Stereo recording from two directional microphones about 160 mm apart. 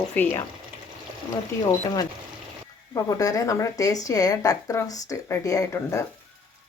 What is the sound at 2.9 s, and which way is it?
A woman's voice, 20° left (ahead or behind).